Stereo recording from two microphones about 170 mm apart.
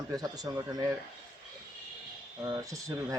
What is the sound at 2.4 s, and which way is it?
Speech, 20° right (ahead or behind).